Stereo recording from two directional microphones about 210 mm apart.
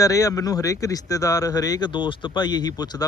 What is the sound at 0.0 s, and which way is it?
Speech, 15° left (ahead or behind).